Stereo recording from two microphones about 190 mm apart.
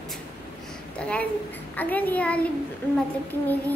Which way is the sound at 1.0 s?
5° left (ahead or behind).